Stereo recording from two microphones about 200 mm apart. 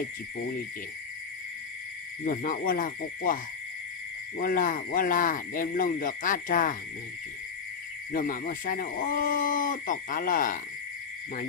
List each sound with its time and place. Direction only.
2.2 s speech: 45° left (ahead or behind)
4.4 s speech: 45° left (ahead or behind)
8.1 s speech: 45° left (ahead or behind)